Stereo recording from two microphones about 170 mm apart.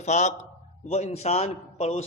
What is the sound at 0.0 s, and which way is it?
A man's voice, 45° left (ahead or behind).